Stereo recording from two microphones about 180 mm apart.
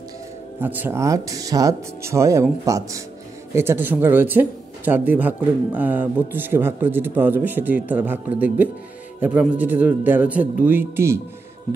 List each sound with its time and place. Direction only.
0.6 s speech: 10° right (ahead or behind)